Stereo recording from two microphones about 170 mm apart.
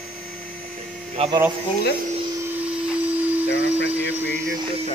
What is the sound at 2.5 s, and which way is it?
Vacuum cleaner, 10° right (ahead or behind).